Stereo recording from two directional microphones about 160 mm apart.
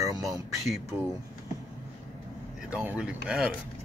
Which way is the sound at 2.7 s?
10° right (ahead or behind).